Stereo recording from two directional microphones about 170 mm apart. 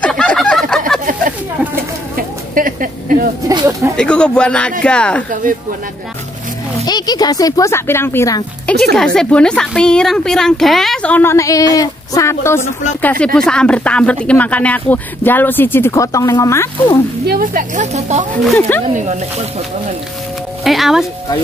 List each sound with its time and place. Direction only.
0.0 s fowl: 5° left (ahead or behind)
2.1 s a sound: 55° right (ahead or behind)
3.4 s speech: 20° right (ahead or behind)
3.9 s a woman's voice: 5° left (ahead or behind)
6.8 s speech: 25° left (ahead or behind)
8.9 s a woman's voice: 5° left (ahead or behind)
17.3 s speech: 55° right (ahead or behind)
20.6 s music: centre (ahead or behind)